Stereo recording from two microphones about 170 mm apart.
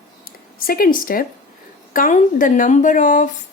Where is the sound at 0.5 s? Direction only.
60° left (ahead or behind).